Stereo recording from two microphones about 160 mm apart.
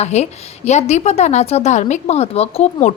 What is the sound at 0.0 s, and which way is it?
A woman's voice, 45° left (ahead or behind).